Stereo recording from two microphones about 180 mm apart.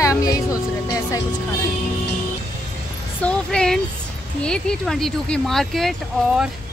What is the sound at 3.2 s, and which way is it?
Speech, 5° left (ahead or behind).